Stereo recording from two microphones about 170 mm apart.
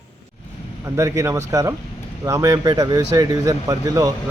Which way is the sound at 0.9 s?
15° right (ahead or behind).